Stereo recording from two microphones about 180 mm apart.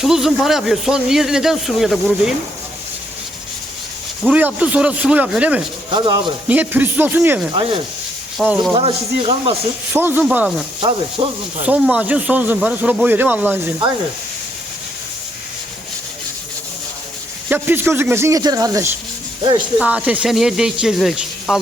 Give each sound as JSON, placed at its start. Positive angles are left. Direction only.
{"t": 0.0, "sound": "speech", "side_deg": 0}
{"t": 4.2, "sound": "speech", "side_deg": -10}
{"t": 5.9, "sound": "speech", "side_deg": -25}
{"t": 6.5, "sound": "speech", "side_deg": -10}
{"t": 7.5, "sound": "speech", "side_deg": -30}
{"t": 8.4, "sound": "speech", "side_deg": -5}
{"t": 8.7, "sound": "speech", "side_deg": -30}
{"t": 9.9, "sound": "speech", "side_deg": -10}
{"t": 10.8, "sound": "speech", "side_deg": -30}
{"t": 11.6, "sound": "speech", "side_deg": -5}
{"t": 17.5, "sound": "speech", "side_deg": -10}